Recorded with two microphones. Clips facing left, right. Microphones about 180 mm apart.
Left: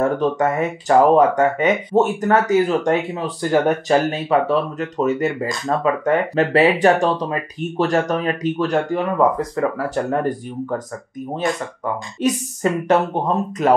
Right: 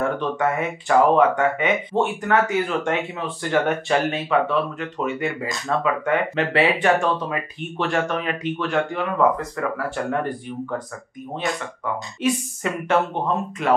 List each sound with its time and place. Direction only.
0.0 s speech: 40° left (ahead or behind)
11.4 s speech: 40° left (ahead or behind)